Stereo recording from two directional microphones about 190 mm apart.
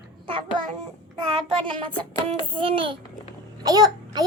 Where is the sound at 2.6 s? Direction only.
25° right (ahead or behind).